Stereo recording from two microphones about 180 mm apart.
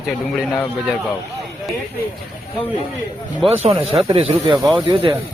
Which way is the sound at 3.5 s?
35° right (ahead or behind).